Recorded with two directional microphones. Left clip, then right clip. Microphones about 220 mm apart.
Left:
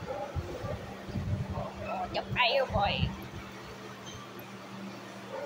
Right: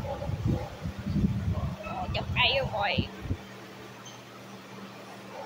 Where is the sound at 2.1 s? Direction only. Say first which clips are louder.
Right 2 dB; 10° right (ahead or behind).